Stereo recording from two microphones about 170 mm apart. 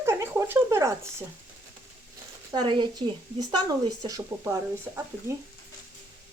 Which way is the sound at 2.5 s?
25° right (ahead or behind).